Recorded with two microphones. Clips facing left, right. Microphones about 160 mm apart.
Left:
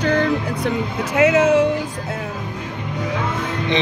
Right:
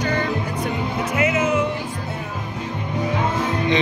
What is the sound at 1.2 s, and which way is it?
Speech, 80° left.